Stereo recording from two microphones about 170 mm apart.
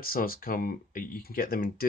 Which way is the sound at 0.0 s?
60° left (ahead or behind).